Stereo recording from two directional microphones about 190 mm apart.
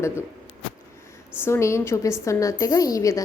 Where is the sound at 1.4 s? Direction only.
15° left (ahead or behind).